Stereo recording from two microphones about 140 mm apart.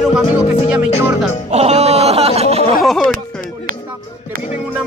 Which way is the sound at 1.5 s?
50° right (ahead or behind).